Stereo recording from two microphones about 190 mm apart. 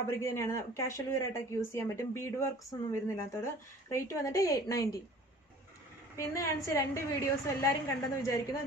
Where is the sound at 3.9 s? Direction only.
15° left (ahead or behind).